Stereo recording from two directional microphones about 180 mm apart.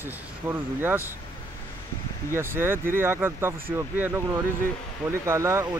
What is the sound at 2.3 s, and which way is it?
Speech, 15° right (ahead or behind).